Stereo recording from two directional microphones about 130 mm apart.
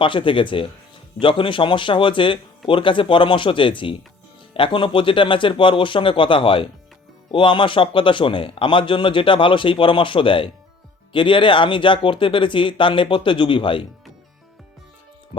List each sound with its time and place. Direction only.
0.0 s a man's voice: 40° left (ahead or behind)